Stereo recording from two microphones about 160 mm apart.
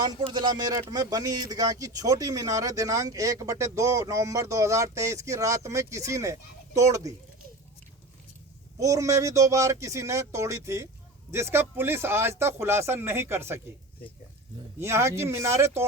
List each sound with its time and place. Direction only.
0.0 s speech: 30° right (ahead or behind)
8.8 s speech: 20° right (ahead or behind)
14.8 s speech: 15° right (ahead or behind)